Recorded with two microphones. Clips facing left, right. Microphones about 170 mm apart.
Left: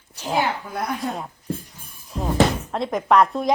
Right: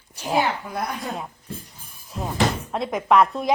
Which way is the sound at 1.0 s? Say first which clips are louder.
Left 3 dB; centre (ahead or behind).